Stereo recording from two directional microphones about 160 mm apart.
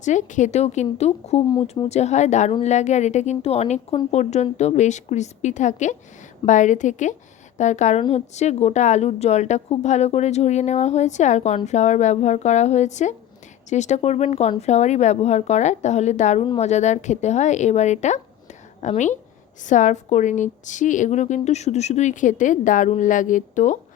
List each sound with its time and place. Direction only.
0.0 s a woman's voice: 50° left (ahead or behind)